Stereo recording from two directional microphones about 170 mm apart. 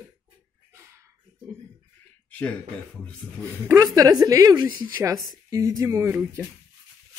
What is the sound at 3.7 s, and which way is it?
Speech, 20° right (ahead or behind).